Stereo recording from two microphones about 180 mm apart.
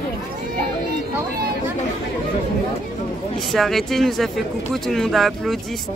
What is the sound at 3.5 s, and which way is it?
Speech, centre (ahead or behind).